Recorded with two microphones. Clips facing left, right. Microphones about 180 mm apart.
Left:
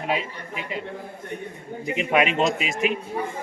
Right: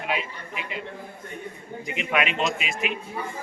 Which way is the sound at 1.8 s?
35° left (ahead or behind).